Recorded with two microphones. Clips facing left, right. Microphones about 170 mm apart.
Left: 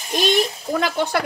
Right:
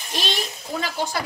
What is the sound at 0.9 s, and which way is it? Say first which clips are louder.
Speech: left 5 dB; 55° left (ahead or behind).